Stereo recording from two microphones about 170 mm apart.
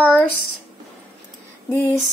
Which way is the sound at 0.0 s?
10° left (ahead or behind).